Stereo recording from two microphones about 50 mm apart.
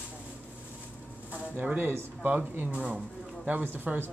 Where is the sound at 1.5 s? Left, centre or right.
Right.